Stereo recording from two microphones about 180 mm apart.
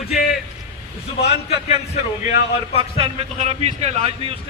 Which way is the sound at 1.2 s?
35° left (ahead or behind).